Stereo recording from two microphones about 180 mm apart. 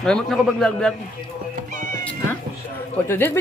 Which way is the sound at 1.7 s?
45° right (ahead or behind).